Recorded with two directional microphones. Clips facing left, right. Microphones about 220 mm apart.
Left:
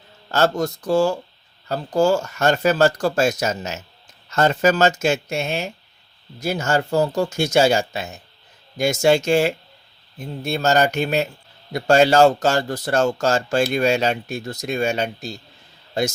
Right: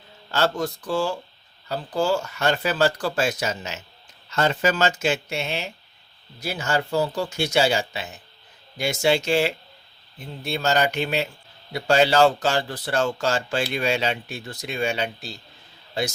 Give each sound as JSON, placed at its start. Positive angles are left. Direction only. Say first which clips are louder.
{"t": 0.3, "sound": "speech", "louder": "left 4 dB", "side_deg": 45}